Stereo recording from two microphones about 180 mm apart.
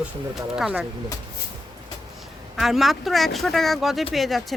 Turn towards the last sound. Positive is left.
turn(degrees=0)  # may be behind; listen again after turning